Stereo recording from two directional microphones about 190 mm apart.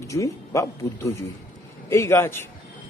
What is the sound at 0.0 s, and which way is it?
A man's voice, 15° left (ahead or behind).